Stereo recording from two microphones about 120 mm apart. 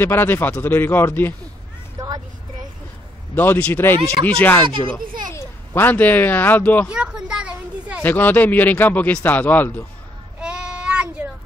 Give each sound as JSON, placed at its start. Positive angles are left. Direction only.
{"t": 0.0, "sound": "speech", "side_deg": 20}
{"t": 2.0, "sound": "vehicle", "side_deg": -35}
{"t": 3.3, "sound": "speech", "side_deg": 15}
{"t": 4.8, "sound": "a child's voice", "side_deg": 25}
{"t": 6.9, "sound": "a sound", "side_deg": -5}
{"t": 8.0, "sound": "speech", "side_deg": 15}
{"t": 10.4, "sound": "child singing", "side_deg": -10}